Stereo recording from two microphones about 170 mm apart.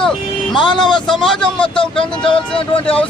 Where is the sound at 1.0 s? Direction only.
Centre (ahead or behind).